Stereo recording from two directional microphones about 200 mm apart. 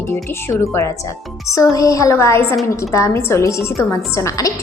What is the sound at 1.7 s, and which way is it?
A woman's voice, 15° left (ahead or behind).